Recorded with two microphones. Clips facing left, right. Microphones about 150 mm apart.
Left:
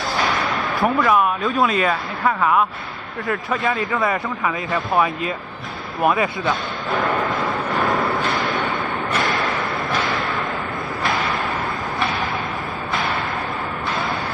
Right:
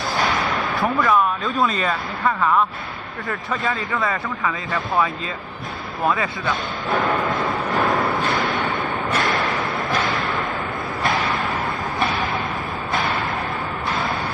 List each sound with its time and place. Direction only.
0.7 s speech: centre (ahead or behind)
3.9 s speech: 20° left (ahead or behind)
7.3 s vehicle: centre (ahead or behind)